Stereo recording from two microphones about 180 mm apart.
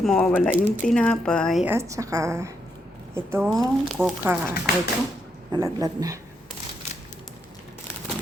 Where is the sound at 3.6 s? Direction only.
Centre (ahead or behind).